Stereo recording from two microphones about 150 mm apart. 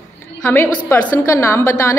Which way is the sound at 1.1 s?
20° left (ahead or behind).